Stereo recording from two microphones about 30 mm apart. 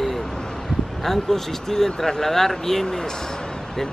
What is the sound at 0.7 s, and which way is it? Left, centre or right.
Speech, centre.